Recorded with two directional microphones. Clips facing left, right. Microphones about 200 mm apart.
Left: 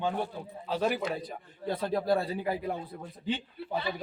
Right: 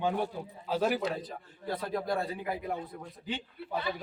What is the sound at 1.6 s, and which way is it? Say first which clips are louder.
Speech: left 4 dB; 25° left (ahead or behind).